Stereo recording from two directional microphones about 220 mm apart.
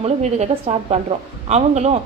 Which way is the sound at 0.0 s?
30° right (ahead or behind).